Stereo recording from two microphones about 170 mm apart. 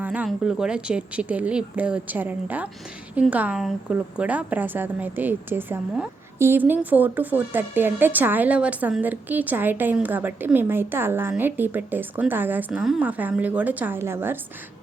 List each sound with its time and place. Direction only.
0.0 s a woman's voice: 10° right (ahead or behind)